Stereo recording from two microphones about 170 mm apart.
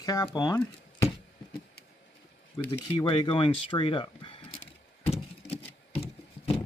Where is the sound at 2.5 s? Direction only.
25° left (ahead or behind).